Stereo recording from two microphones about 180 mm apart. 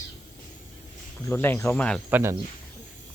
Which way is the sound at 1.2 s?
10° left (ahead or behind).